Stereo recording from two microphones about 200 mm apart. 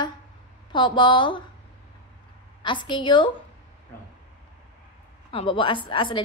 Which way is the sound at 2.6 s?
25° left (ahead or behind).